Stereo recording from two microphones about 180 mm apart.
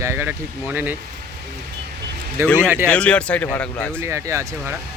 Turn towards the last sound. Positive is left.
turn(degrees=-15)  # may be behind; listen again after turning